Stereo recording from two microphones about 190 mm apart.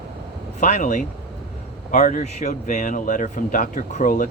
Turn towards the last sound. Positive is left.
turn(degrees=45)  # may be behind; listen again after turning